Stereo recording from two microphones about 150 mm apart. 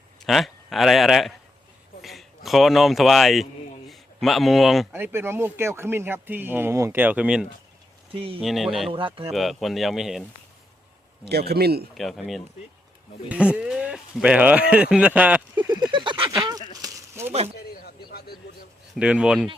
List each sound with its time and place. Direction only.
0.3 s a man's voice: centre (ahead or behind)
4.9 s speech: 15° right (ahead or behind)
8.9 s speech: 35° right (ahead or behind)
9.3 s speech: centre (ahead or behind)
11.3 s a man's voice: 90° right
11.9 s speech: centre (ahead or behind)
15.7 s a sound: 30° right (ahead or behind)
17.6 s a sound: 90° left
18.9 s speech: 5° right (ahead or behind)